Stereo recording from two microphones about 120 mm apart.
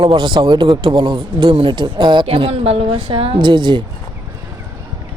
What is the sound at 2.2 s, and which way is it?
A man's voice, 55° right (ahead or behind).